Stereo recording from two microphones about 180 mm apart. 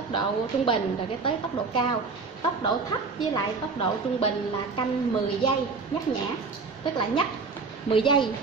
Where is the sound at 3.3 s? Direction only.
25° left (ahead or behind).